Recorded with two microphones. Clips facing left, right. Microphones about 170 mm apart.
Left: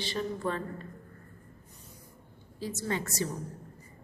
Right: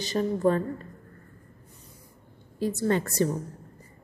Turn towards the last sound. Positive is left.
turn(degrees=-55)  # may be behind; listen again after turning